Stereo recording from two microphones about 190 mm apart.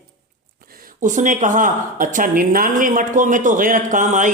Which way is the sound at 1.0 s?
40° right (ahead or behind).